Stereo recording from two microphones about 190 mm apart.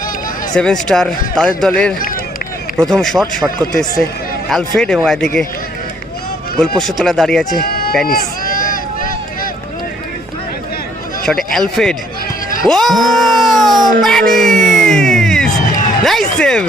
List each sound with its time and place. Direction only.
0.5 s speech: 5° left (ahead or behind)
6.6 s speech: centre (ahead or behind)
7.6 s a sound: 50° left (ahead or behind)
8.0 s run: 50° left (ahead or behind)
11.3 s speech: centre (ahead or behind)
14.0 s music: centre (ahead or behind)
16.0 s speech: centre (ahead or behind)